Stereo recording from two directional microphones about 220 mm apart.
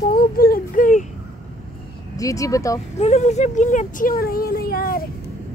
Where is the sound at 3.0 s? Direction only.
30° left (ahead or behind).